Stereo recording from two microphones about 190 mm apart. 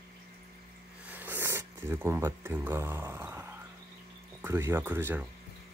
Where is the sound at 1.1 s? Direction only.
10° right (ahead or behind).